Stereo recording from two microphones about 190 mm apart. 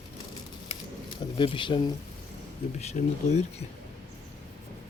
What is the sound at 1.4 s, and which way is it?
Speech, 25° left (ahead or behind).